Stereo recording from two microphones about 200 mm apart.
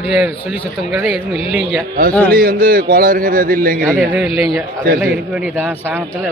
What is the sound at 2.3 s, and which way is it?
A man's voice, 45° right (ahead or behind).